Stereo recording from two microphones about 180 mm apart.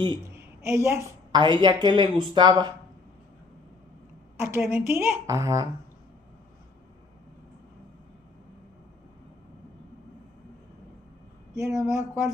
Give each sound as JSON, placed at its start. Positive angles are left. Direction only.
{"t": 0.7, "sound": "a woman's voice", "side_deg": -15}
{"t": 4.4, "sound": "a woman's voice", "side_deg": -15}
{"t": 11.5, "sound": "a woman's voice", "side_deg": -20}